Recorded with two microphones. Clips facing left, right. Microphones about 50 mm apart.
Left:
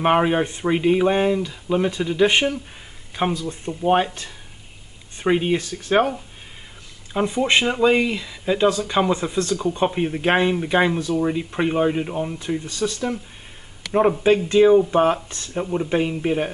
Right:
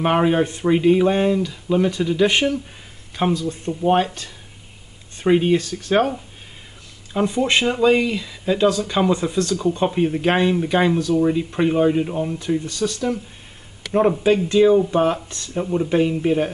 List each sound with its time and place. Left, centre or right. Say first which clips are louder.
0.0 s speech: right 1 dB; centre
3.3 s speech: right 3 dB; left
3.8 s speech: right 1 dB; centre
5.2 s speech: right 3 dB; centre
5.6 s speech: right 1 dB; left
7.2 s speech: even; centre
8.6 s speech: right 1 dB; left
9.1 s speech: right 2 dB; centre
9.4 s speech: right 1 dB; left
9.8 s speech: right 2 dB; centre
12.4 s speech: right 3 dB; centre
13.9 s speech: even; centre
15.5 s speech: right 2 dB; centre